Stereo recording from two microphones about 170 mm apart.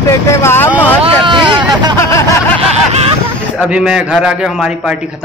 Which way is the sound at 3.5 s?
5° right (ahead or behind).